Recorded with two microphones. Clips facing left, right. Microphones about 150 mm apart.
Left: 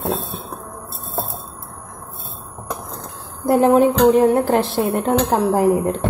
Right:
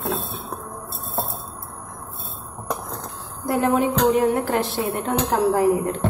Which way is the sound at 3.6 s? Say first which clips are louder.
Left 6 dB; 30° left (ahead or behind).